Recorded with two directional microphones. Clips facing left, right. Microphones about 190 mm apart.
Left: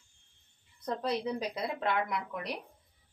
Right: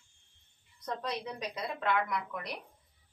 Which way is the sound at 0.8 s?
30° left (ahead or behind).